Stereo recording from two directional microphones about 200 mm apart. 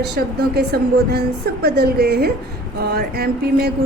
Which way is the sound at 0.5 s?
50° right (ahead or behind).